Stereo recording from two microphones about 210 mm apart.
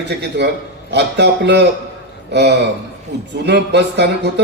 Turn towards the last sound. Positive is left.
turn(degrees=-55)  # may be behind; listen again after turning